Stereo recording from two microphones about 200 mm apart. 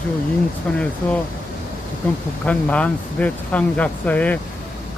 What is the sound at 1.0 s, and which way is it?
Speech, 10° left (ahead or behind).